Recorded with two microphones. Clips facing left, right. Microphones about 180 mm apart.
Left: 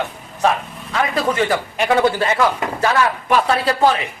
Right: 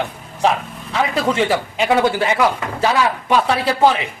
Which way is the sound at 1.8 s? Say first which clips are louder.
Even; 10° right (ahead or behind).